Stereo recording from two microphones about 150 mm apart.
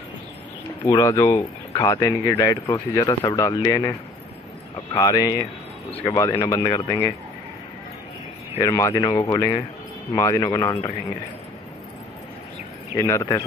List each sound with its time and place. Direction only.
0.8 s speech: 25° left (ahead or behind)
4.9 s speech: 25° left (ahead or behind)
8.5 s speech: 20° left (ahead or behind)
12.9 s speech: 20° left (ahead or behind)